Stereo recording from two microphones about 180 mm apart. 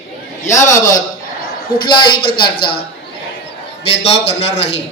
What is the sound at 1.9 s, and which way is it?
Speech, 25° left (ahead or behind).